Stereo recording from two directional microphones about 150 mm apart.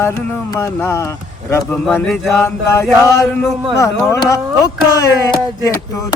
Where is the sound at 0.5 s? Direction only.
20° left (ahead or behind).